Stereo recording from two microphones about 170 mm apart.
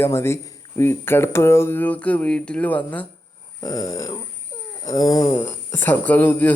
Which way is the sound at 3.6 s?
20° left (ahead or behind).